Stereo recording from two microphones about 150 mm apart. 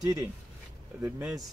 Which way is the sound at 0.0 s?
20° right (ahead or behind).